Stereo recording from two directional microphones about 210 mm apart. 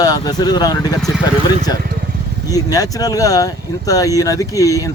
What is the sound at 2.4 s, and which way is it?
Speech, 15° left (ahead or behind).